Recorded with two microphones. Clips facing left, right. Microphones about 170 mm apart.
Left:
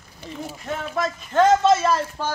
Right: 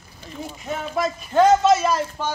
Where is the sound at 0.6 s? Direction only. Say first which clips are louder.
Right 2 dB; 10° right (ahead or behind).